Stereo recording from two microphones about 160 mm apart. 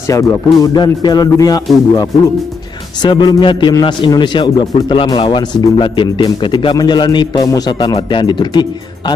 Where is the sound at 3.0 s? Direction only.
30° left (ahead or behind).